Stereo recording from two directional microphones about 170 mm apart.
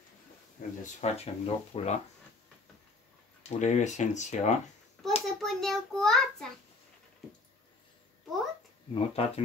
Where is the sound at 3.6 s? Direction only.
45° left (ahead or behind).